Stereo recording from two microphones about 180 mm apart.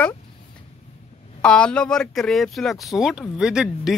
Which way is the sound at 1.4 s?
5° left (ahead or behind).